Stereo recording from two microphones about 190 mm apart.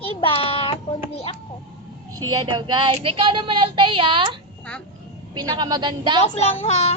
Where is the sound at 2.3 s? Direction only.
25° right (ahead or behind).